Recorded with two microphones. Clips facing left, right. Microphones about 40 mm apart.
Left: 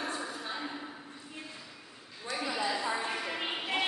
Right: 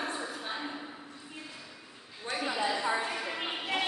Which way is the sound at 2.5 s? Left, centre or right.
Centre.